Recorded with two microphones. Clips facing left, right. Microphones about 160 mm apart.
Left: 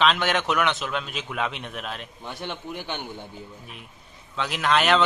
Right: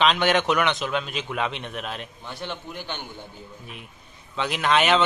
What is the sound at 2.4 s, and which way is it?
Speech, 15° left (ahead or behind).